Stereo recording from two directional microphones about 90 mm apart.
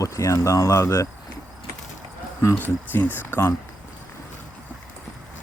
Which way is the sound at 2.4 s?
30° left (ahead or behind).